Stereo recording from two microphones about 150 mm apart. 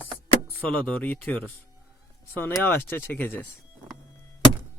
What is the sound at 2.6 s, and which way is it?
Speech, 15° left (ahead or behind).